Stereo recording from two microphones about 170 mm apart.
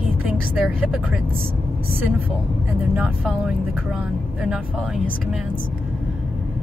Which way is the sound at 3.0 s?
5° right (ahead or behind).